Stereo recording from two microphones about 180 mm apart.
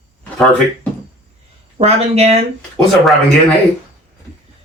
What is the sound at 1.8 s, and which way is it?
Speech, 35° right (ahead or behind).